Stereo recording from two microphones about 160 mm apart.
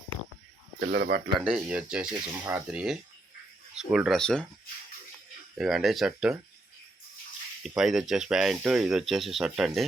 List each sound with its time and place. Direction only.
0.8 s speech: 80° right
1.4 s speech: 5° right (ahead or behind)
5.5 s speech: centre (ahead or behind)
7.8 s speech: centre (ahead or behind)